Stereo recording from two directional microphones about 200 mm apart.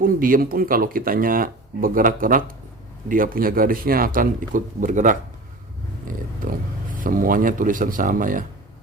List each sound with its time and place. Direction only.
0.0 s speech: 45° right (ahead or behind)